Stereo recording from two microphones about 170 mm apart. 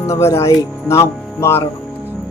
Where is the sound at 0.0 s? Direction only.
20° left (ahead or behind).